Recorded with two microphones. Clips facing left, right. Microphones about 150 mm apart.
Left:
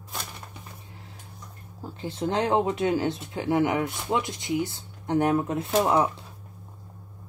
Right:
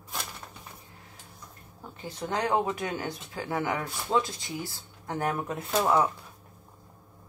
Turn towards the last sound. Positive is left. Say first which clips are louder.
# left 2 dB
turn(degrees=20)  # may be behind; listen again after turning